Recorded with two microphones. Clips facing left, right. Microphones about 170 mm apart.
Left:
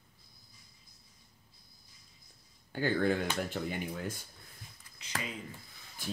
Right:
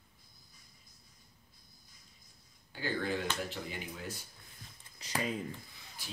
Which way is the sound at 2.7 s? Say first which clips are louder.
Left 6 dB; 50° left (ahead or behind).